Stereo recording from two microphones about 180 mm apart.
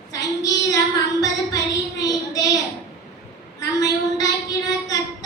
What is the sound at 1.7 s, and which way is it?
Child singing, 20° left (ahead or behind).